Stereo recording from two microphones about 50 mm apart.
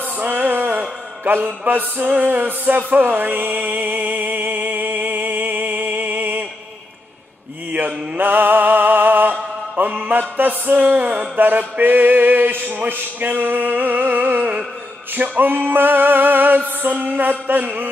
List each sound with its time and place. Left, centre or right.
0.2 s music: right
7.7 s music: right